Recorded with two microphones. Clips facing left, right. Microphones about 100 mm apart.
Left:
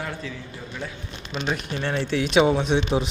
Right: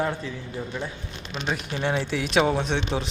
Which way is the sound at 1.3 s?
20° left (ahead or behind).